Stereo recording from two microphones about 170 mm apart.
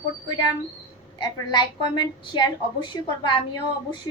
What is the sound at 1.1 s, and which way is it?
A woman's voice, 25° left (ahead or behind).